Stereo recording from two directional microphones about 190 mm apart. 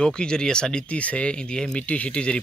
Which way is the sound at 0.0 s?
5° left (ahead or behind).